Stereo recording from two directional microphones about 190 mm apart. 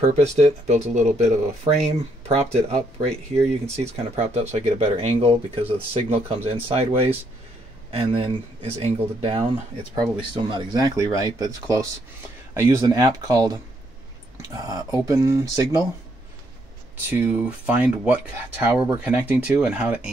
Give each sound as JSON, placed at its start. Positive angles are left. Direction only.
{"t": 0.1, "sound": "speech", "side_deg": -35}
{"t": 17.1, "sound": "speech", "side_deg": -10}